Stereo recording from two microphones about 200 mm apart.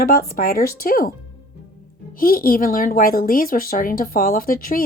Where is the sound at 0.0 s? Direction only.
50° left (ahead or behind).